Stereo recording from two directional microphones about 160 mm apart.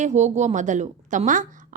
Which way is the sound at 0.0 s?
45° right (ahead or behind).